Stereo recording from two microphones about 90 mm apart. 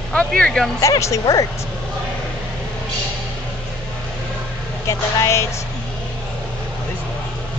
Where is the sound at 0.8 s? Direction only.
35° left (ahead or behind).